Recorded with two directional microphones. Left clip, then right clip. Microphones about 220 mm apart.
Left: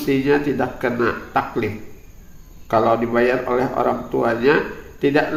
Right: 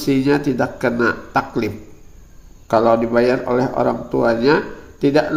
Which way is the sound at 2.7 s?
45° right (ahead or behind).